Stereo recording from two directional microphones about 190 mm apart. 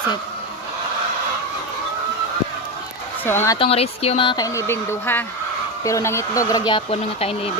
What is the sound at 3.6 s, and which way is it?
Speech, 30° left (ahead or behind).